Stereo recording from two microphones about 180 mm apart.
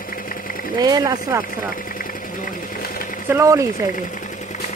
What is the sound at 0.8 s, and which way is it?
Speech, 20° right (ahead or behind).